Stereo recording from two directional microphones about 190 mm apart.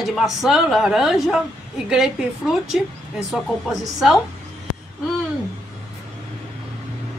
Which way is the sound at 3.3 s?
Centre (ahead or behind).